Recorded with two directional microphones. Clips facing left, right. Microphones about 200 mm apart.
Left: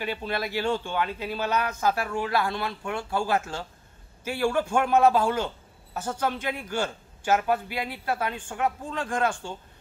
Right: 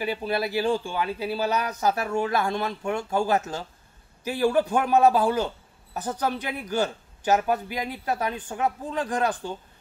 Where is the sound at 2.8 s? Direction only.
40° right (ahead or behind).